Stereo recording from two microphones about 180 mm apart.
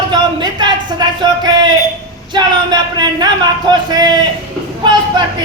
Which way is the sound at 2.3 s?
25° right (ahead or behind).